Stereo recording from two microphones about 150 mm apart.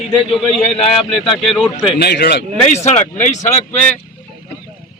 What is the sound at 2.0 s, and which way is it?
Speech, 90° left.